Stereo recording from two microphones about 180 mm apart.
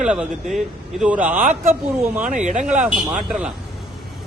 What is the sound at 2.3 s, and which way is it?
Speech, 40° right (ahead or behind).